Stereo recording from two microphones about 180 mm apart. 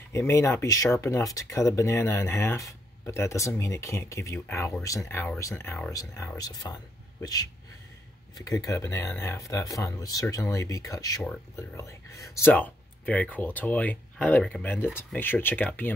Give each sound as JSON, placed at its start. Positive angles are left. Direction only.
{"t": 0.1, "sound": "speech", "side_deg": 15}